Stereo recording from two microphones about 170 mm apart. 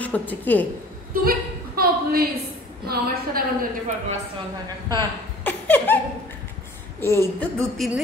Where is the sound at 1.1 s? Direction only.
60° right (ahead or behind).